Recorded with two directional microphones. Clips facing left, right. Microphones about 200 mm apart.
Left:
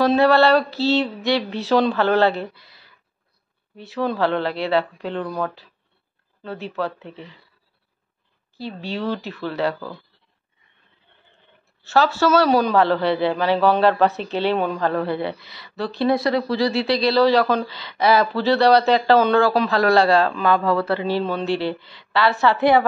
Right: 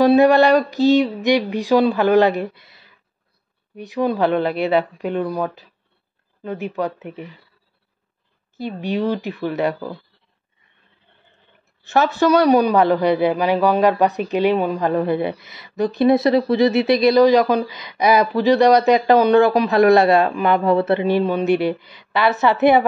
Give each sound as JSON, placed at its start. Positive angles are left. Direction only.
{"t": 0.0, "sound": "a woman's voice", "side_deg": -15}
{"t": 8.5, "sound": "a woman's voice", "side_deg": -20}
{"t": 11.8, "sound": "a woman's voice", "side_deg": -15}